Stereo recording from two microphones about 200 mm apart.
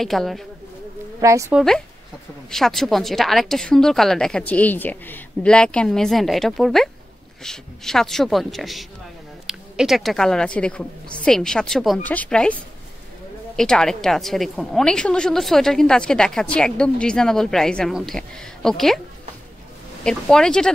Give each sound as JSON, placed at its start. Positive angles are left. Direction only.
{"t": 0.0, "sound": "a woman's voice", "side_deg": 0}
{"t": 1.2, "sound": "speech", "side_deg": -15}
{"t": 1.5, "sound": "a woman's voice", "side_deg": 0}
{"t": 13.6, "sound": "a woman's voice", "side_deg": 0}
{"t": 20.0, "sound": "a woman's voice", "side_deg": 5}